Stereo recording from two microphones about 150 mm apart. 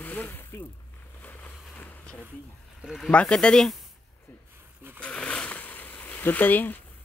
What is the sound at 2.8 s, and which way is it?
Speech, centre (ahead or behind).